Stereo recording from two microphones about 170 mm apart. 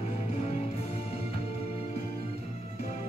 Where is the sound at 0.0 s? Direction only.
35° left (ahead or behind).